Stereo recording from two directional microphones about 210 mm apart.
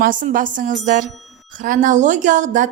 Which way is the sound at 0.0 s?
40° right (ahead or behind).